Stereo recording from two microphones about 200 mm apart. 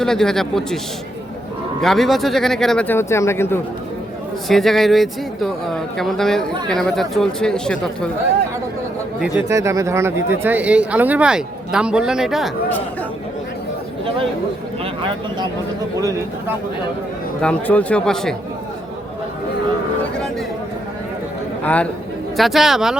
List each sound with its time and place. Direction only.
0.0 s speech: 5° left (ahead or behind)
1.8 s speech: centre (ahead or behind)
4.4 s speech: centre (ahead or behind)
9.2 s speech: 10° right (ahead or behind)
16.0 s speech: 15° right (ahead or behind)
17.4 s speech: 5° left (ahead or behind)
21.6 s speech: 5° left (ahead or behind)